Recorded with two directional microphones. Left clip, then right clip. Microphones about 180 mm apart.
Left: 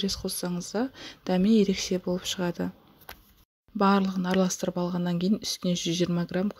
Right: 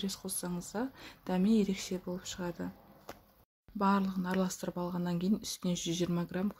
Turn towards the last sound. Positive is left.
turn(degrees=30)  # may be behind; listen again after turning